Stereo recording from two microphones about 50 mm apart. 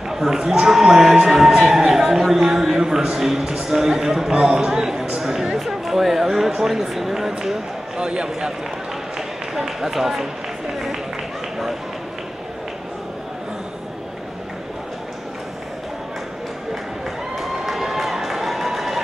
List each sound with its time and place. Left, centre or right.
0.1 s speech: centre
8.0 s speech: centre
17.4 s run: centre